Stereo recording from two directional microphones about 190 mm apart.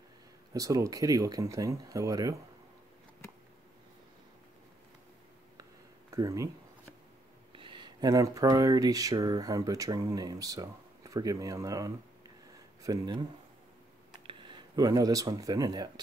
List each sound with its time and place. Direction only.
0.5 s speech: 15° right (ahead or behind)
5.6 s a sound: 15° right (ahead or behind)
7.5 s speech: 25° right (ahead or behind)
14.2 s speech: 25° right (ahead or behind)